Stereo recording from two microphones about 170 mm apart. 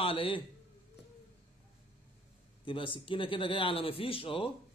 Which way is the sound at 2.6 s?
30° left (ahead or behind).